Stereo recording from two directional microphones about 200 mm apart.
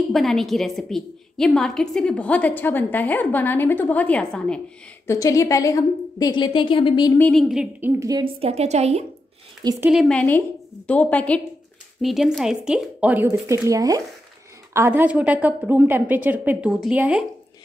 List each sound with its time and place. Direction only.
0.1 s a woman's voice: centre (ahead or behind)
5.0 s a woman's voice: 15° left (ahead or behind)
7.2 s a woman's voice: 5° left (ahead or behind)
8.0 s a woman's voice: 20° right (ahead or behind)
8.4 s a woman's voice: 30° right (ahead or behind)
9.6 s speech: 20° right (ahead or behind)
9.8 s a woman's voice: centre (ahead or behind)